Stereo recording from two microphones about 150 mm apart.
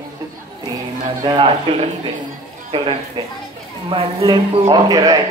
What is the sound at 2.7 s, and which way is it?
Speech, 35° right (ahead or behind).